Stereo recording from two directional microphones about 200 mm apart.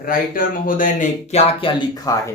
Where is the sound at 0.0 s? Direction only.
45° left (ahead or behind).